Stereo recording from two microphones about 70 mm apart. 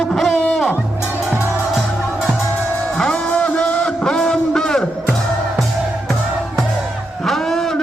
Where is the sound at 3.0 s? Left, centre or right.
Centre.